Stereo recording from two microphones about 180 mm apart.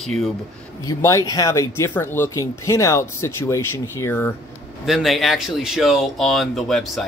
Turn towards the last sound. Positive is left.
turn(degrees=0)  # may be behind; listen again after turning